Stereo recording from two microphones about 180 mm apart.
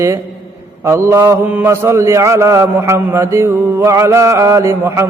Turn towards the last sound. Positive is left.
turn(degrees=-15)  # may be behind; listen again after turning